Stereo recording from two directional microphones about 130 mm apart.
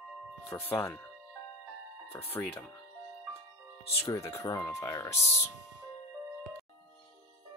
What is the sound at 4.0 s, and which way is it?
Speech, 20° left (ahead or behind).